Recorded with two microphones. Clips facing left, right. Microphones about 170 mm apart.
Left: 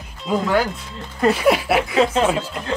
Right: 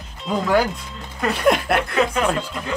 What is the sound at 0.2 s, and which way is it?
Moo, centre (ahead or behind).